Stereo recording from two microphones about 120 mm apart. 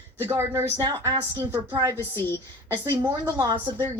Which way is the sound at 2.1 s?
15° left (ahead or behind).